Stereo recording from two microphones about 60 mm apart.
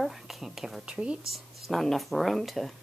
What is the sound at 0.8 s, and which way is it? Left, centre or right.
Speech, centre.